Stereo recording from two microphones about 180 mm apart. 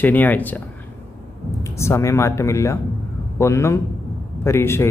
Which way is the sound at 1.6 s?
15° left (ahead or behind).